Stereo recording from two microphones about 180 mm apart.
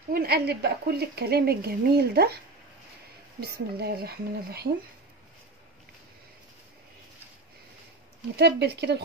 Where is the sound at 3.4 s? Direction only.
60° right (ahead or behind).